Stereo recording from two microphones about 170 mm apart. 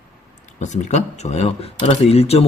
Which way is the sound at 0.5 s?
45° left (ahead or behind).